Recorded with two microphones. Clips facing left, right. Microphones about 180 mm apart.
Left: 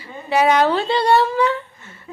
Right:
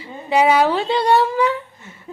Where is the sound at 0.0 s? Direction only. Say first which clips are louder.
Right 1 dB; 15° right (ahead or behind).